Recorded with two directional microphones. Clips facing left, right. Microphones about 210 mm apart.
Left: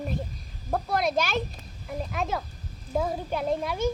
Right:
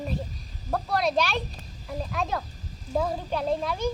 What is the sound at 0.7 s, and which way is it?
Speech, 20° left (ahead or behind).